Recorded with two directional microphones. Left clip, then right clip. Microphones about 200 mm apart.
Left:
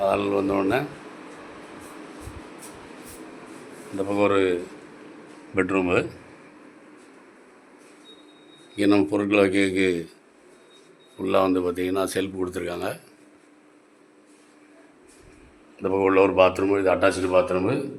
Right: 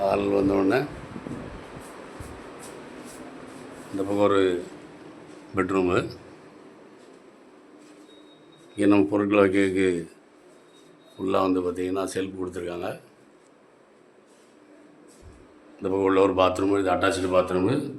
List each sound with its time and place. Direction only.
0.0 s speech: centre (ahead or behind)
3.9 s speech: centre (ahead or behind)
5.5 s speech: centre (ahead or behind)
8.7 s speech: 5° left (ahead or behind)
11.2 s speech: 5° left (ahead or behind); by 13.0 s 25° left (ahead or behind)
15.8 s speech: 5° left (ahead or behind)